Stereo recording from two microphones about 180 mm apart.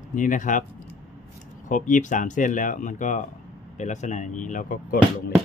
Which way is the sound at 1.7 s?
45° left (ahead or behind).